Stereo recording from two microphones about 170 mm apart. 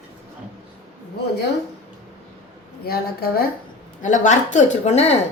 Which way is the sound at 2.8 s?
65° left (ahead or behind).